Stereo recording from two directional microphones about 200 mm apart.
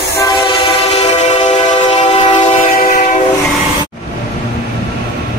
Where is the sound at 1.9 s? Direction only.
25° left (ahead or behind).